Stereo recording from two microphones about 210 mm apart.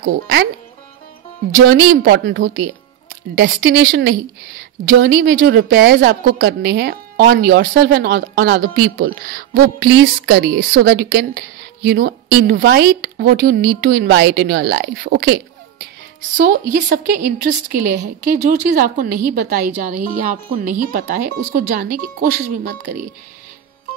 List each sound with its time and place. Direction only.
0.0 s a woman's voice: 55° right (ahead or behind)
1.7 s a woman's voice: 55° right (ahead or behind)
3.3 s a woman's voice: 45° right (ahead or behind)
16.3 s a woman's voice: 50° right (ahead or behind)